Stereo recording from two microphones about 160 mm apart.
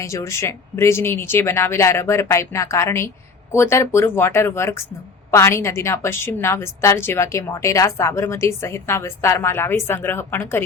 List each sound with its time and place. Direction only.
0.0 s a woman's voice: 20° left (ahead or behind)